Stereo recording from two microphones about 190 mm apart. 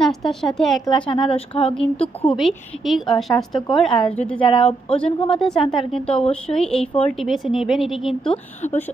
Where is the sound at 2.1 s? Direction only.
5° left (ahead or behind).